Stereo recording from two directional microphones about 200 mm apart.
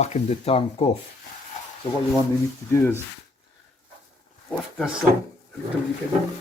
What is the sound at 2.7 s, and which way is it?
Speech, 10° left (ahead or behind).